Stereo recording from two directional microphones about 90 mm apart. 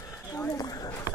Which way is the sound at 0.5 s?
45° left (ahead or behind).